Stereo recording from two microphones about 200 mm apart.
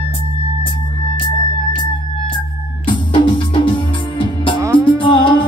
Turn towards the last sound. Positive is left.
turn(degrees=25)  # may be behind; listen again after turning